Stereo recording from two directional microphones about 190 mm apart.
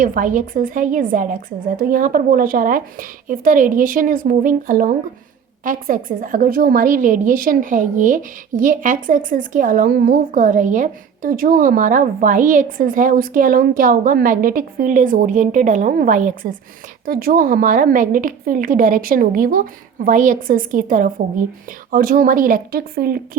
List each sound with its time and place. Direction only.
0.0 s a woman's voice: 45° right (ahead or behind)